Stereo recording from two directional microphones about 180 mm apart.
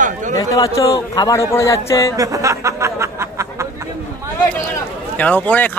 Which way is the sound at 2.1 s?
20° right (ahead or behind).